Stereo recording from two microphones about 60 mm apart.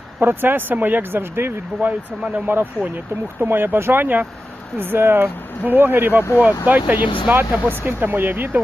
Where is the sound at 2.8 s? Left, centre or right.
Left.